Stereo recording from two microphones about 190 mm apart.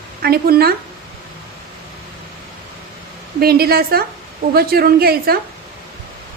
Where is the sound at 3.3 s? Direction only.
55° right (ahead or behind).